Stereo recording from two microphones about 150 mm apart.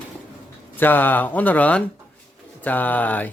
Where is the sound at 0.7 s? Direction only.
15° left (ahead or behind).